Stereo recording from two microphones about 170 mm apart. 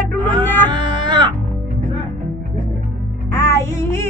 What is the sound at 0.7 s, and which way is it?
Music, 25° right (ahead or behind).